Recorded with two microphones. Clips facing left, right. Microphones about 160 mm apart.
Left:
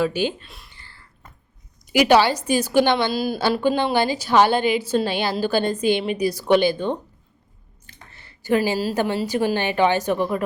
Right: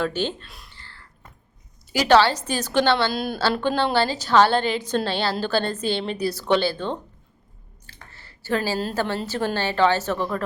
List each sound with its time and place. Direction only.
0.0 s a woman's voice: 10° left (ahead or behind)
0.7 s a sound: 15° left (ahead or behind)
1.9 s a woman's voice: 15° left (ahead or behind)
3.1 s a woman's voice: centre (ahead or behind)
7.9 s a sound: 20° left (ahead or behind)
9.0 s a woman's voice: 15° left (ahead or behind)